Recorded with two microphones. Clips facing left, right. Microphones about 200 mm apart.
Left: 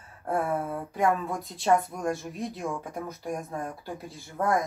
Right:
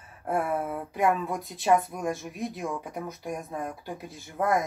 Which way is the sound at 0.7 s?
5° right (ahead or behind).